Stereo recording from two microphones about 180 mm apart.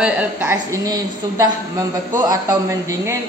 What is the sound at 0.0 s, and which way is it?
A woman's voice, 5° right (ahead or behind).